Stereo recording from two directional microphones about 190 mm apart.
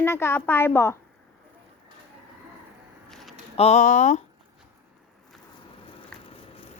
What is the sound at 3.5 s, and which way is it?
Speech, 35° left (ahead or behind).